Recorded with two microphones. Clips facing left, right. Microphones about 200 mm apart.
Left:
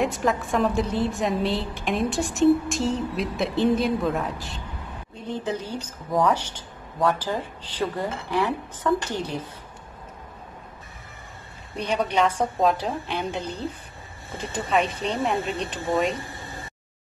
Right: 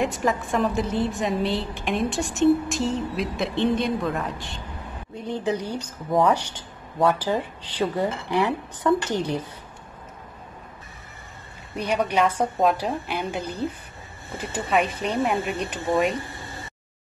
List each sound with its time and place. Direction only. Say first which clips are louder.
0.0 s a woman's voice: even; centre (ahead or behind)
5.3 s a woman's voice: right 2 dB; 15° right (ahead or behind)
11.7 s a woman's voice: right 1 dB; 10° right (ahead or behind)